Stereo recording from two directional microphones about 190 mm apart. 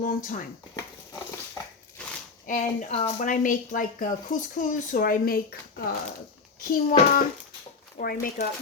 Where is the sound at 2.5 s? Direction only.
45° left (ahead or behind).